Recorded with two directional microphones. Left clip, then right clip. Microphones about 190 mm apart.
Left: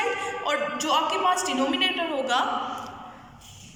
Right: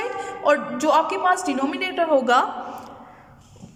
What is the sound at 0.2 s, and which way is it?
A woman's voice, 65° right (ahead or behind).